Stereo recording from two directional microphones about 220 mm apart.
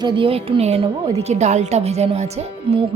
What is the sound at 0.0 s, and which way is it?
A woman's voice, 20° right (ahead or behind).